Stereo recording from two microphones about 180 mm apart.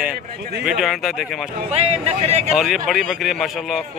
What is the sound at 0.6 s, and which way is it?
Speech, centre (ahead or behind).